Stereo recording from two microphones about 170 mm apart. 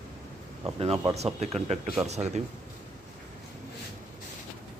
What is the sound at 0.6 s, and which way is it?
Speech, 35° right (ahead or behind).